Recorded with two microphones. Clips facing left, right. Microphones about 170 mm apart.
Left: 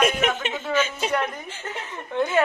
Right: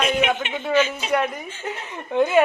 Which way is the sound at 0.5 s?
10° right (ahead or behind).